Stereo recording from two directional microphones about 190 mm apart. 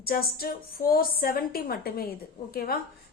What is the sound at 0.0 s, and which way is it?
A woman's voice, 50° left (ahead or behind).